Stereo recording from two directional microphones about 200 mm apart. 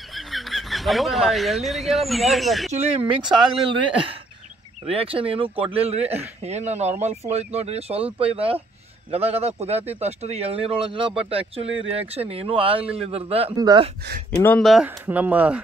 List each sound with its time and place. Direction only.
0.1 s speech: centre (ahead or behind)
2.7 s speech: 25° right (ahead or behind)
4.8 s speech: 30° right (ahead or behind)
14.4 s speech: 5° left (ahead or behind)